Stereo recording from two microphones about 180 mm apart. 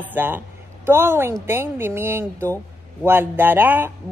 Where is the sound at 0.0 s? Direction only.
10° right (ahead or behind).